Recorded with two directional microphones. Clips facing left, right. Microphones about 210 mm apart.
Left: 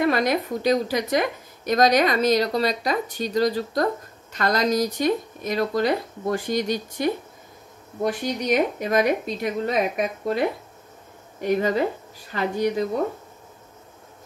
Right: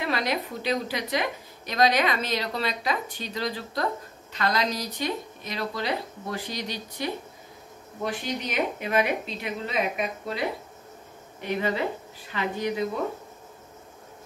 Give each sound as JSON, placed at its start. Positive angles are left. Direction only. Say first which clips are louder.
{"t": 0.0, "sound": "a woman's voice", "louder": "left 7 dB", "side_deg": 50}
{"t": 11.4, "sound": "a woman's voice", "louder": "left 6 dB", "side_deg": 45}